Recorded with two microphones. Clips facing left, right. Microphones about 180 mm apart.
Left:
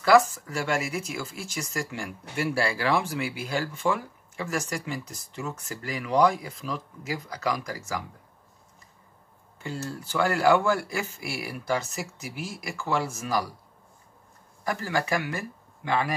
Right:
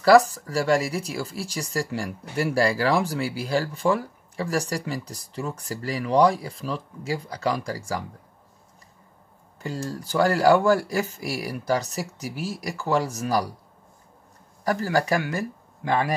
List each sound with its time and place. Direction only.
0.0 s speech: 35° right (ahead or behind)
9.6 s speech: 40° right (ahead or behind)
14.6 s speech: 40° right (ahead or behind)